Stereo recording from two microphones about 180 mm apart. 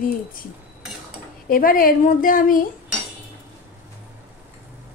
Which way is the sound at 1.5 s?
50° left (ahead or behind).